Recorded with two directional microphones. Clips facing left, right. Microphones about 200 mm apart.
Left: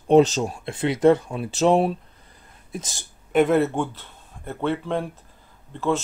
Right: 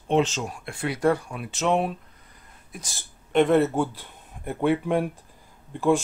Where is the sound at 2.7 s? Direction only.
20° left (ahead or behind).